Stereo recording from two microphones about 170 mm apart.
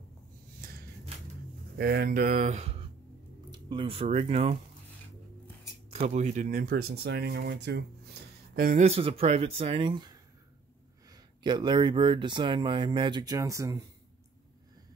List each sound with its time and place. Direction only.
0.6 s a sound: 60° right (ahead or behind)
1.8 s speech: 65° right (ahead or behind); by 2.8 s 40° right (ahead or behind)
3.5 s speech: 25° right (ahead or behind)
5.9 s speech: 40° right (ahead or behind); by 8.8 s 60° right (ahead or behind)
8.8 s speech: 35° right (ahead or behind); by 13.8 s 20° right (ahead or behind)